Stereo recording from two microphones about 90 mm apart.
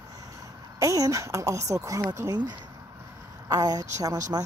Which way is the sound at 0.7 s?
40° right (ahead or behind).